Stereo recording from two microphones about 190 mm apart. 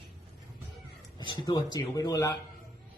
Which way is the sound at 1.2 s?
25° left (ahead or behind).